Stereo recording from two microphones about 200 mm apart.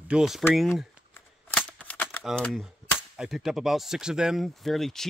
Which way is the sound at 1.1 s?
5° left (ahead or behind).